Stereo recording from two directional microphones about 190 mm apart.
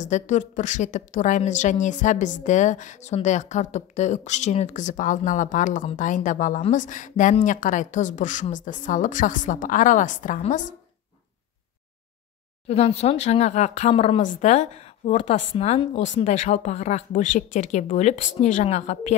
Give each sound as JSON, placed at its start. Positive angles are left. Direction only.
{"t": 0.0, "sound": "a woman's voice", "side_deg": 40}
{"t": 12.6, "sound": "a woman's voice", "side_deg": 35}